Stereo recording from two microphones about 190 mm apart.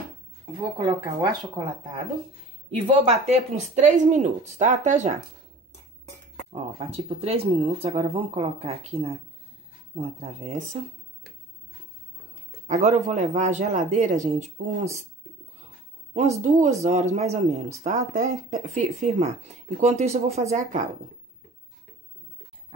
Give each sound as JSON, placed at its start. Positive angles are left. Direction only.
{"t": 0.7, "sound": "speech", "side_deg": -20}
{"t": 2.8, "sound": "speech", "side_deg": -35}
{"t": 6.5, "sound": "speech", "side_deg": -30}
{"t": 12.6, "sound": "speech", "side_deg": -40}
{"t": 16.1, "sound": "speech", "side_deg": -35}